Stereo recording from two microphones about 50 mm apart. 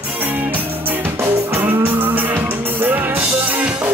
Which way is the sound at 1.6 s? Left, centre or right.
Right.